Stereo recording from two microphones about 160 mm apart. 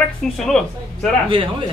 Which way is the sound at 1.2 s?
35° right (ahead or behind).